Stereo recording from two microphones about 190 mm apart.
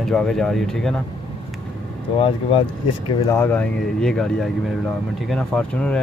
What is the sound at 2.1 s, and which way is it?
Speech, 30° left (ahead or behind).